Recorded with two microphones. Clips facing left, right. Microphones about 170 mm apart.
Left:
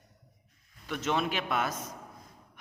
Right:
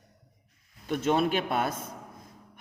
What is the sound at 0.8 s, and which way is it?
Speech, 45° right (ahead or behind).